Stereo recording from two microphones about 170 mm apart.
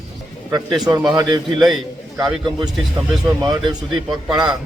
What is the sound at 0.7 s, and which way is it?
Speech, 5° right (ahead or behind).